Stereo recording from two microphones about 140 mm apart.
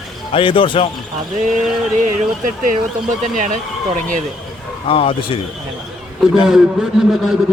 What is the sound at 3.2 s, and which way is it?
Speech, 65° right (ahead or behind).